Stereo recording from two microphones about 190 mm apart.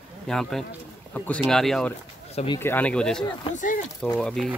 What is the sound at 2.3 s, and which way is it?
Speech, 30° left (ahead or behind).